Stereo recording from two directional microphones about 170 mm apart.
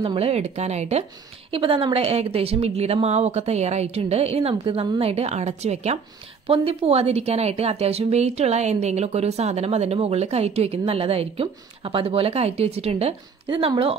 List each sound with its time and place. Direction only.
0.0 s a woman's voice: 35° right (ahead or behind)